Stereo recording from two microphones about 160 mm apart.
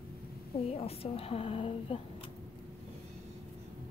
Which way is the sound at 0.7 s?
40° left (ahead or behind).